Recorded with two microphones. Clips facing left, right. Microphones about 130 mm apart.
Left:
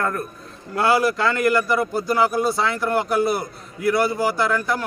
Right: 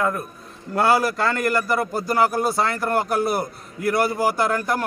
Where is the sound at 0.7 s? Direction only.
40° right (ahead or behind).